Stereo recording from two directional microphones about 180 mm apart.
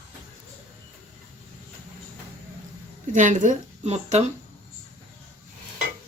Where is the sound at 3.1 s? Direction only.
45° right (ahead or behind).